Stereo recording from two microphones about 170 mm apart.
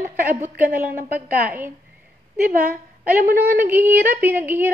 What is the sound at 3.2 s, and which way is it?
Speech, 55° right (ahead or behind).